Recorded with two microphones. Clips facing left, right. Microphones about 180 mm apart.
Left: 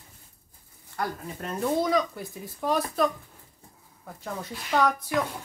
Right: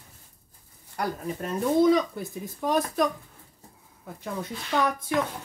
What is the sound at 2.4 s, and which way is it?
Speech, 20° right (ahead or behind).